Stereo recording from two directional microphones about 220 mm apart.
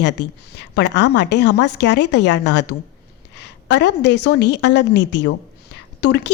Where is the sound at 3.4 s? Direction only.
50° left (ahead or behind).